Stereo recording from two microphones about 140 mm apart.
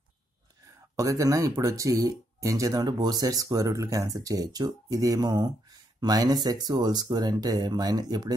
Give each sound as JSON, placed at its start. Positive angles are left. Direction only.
{"t": 0.9, "sound": "speech", "side_deg": -25}